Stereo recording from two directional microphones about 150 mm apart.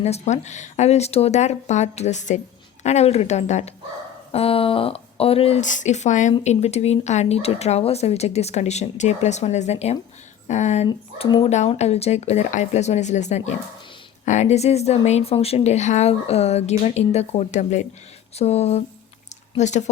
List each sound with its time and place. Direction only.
0.0 s speech: 50° left (ahead or behind)
5.6 s speech: 55° left (ahead or behind)
10.8 s speech: 30° left (ahead or behind)
11.4 s speech: 50° left (ahead or behind)